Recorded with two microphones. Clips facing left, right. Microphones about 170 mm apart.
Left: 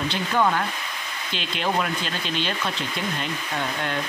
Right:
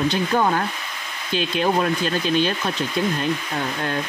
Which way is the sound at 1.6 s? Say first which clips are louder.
Right 4 dB; 40° right (ahead or behind).